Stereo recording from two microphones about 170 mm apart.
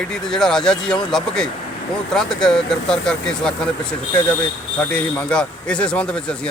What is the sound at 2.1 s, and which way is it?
Speech, 5° left (ahead or behind).